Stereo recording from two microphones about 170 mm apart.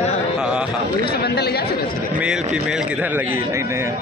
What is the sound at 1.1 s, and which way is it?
Speech, 75° left (ahead or behind).